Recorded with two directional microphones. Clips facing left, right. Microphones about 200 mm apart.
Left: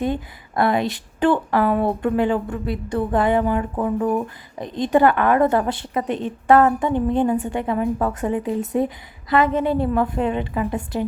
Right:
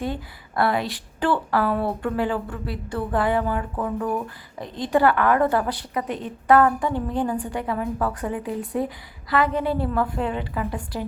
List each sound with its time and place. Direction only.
0.0 s speech: 20° left (ahead or behind)